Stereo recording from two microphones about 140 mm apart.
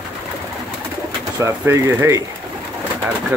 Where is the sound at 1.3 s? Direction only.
20° right (ahead or behind).